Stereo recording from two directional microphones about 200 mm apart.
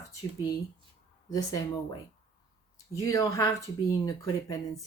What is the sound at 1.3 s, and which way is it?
Speech, 20° left (ahead or behind).